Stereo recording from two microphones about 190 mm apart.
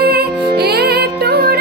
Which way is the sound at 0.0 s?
55° right (ahead or behind).